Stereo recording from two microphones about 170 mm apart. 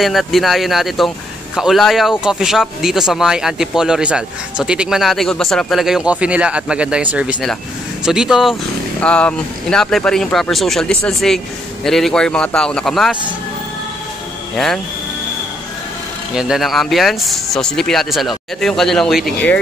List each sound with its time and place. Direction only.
0.0 s speech: centre (ahead or behind)
16.3 s speech: centre (ahead or behind)